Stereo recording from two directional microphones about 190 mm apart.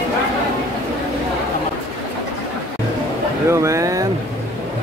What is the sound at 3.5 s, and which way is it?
Speech, 15° right (ahead or behind).